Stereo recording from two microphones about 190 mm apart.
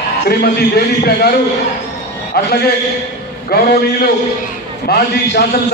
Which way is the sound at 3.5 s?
55° left (ahead or behind).